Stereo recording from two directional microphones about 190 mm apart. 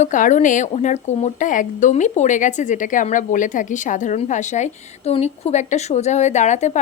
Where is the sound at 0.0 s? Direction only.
40° left (ahead or behind).